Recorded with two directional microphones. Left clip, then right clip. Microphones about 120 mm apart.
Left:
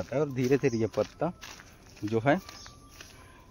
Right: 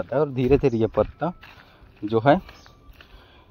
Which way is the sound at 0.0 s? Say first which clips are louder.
Right 7 dB; 25° right (ahead or behind).